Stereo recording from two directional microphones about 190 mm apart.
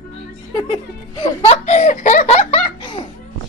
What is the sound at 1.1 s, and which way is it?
Laughter, 25° left (ahead or behind).